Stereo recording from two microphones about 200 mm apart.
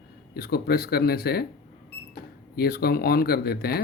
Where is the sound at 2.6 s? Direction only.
50° left (ahead or behind).